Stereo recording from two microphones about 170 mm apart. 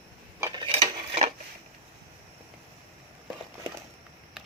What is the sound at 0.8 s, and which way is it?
Dishes, 40° right (ahead or behind).